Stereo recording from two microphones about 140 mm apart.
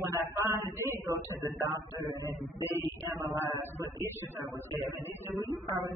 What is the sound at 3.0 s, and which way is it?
Music, 20° right (ahead or behind).